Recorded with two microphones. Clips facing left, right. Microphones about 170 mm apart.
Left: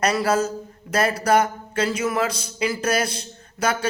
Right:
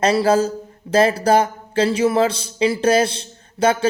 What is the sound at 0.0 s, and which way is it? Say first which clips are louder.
Speech: right 5 dB; 30° right (ahead or behind).